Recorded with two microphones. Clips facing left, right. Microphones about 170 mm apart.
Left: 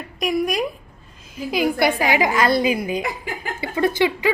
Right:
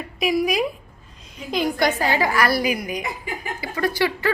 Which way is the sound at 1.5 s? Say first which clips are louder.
Left 2 dB; 10° left (ahead or behind).